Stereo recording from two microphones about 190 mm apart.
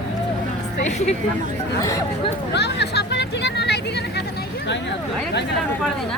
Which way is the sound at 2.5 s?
60° left (ahead or behind).